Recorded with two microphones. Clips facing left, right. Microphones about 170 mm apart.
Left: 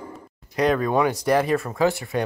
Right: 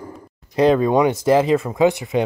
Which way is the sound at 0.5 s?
25° right (ahead or behind).